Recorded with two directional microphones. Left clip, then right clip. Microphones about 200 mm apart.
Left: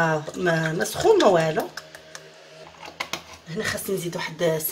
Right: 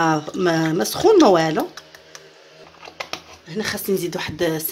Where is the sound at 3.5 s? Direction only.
55° right (ahead or behind).